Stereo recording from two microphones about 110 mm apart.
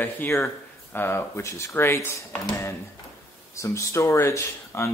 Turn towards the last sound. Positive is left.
turn(degrees=25)  # may be behind; listen again after turning